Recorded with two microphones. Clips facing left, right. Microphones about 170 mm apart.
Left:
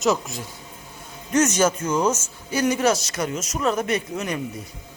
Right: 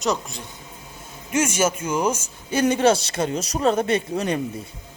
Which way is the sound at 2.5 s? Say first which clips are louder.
Right 2 dB; 30° right (ahead or behind).